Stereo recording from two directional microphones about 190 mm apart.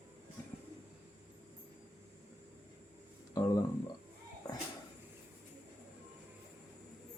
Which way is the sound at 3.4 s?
20° left (ahead or behind).